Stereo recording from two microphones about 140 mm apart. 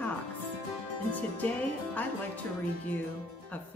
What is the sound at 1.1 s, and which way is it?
A woman's voice, 10° left (ahead or behind).